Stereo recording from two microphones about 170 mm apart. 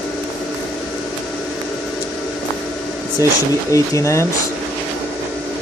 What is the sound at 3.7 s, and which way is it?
Speech, 20° left (ahead or behind).